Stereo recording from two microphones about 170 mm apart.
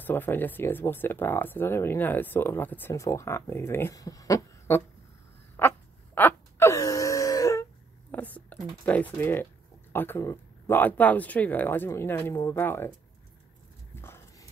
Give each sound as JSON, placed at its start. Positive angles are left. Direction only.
{"t": 0.0, "sound": "speech", "side_deg": 10}
{"t": 5.6, "sound": "wail", "side_deg": 10}
{"t": 8.1, "sound": "a sound", "side_deg": 10}
{"t": 9.9, "sound": "speech", "side_deg": 15}
{"t": 13.9, "sound": "dog", "side_deg": 15}